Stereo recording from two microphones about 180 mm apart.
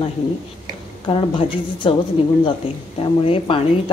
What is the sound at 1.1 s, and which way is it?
A woman's voice, 30° left (ahead or behind).